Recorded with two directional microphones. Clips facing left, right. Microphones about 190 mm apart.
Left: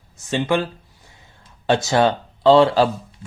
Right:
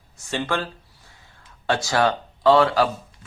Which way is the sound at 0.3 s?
15° left (ahead or behind).